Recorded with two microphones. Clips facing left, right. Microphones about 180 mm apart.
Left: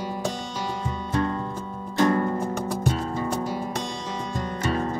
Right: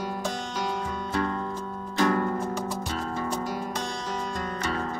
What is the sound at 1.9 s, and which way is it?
Music, 15° left (ahead or behind).